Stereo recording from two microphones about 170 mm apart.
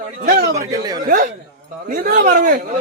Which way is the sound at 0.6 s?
25° right (ahead or behind).